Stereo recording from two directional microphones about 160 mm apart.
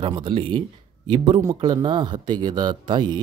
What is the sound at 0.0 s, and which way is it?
A man's voice, 30° right (ahead or behind).